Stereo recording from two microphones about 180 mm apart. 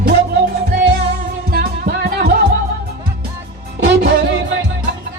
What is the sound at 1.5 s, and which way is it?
Music, 55° right (ahead or behind).